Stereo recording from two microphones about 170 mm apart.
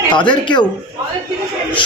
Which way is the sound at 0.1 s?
25° left (ahead or behind).